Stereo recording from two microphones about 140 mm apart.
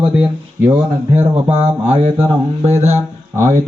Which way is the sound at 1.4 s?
50° right (ahead or behind).